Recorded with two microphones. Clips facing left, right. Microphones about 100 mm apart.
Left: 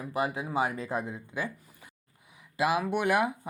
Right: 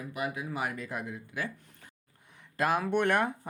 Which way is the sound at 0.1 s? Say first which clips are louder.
Left 5 dB; 30° left (ahead or behind).